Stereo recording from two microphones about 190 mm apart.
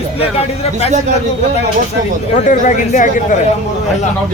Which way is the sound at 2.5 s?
45° left (ahead or behind).